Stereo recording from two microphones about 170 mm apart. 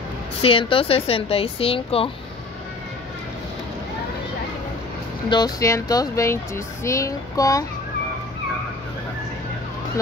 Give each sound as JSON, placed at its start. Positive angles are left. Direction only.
{"t": 0.4, "sound": "speech", "side_deg": 30}
{"t": 5.3, "sound": "speech", "side_deg": 20}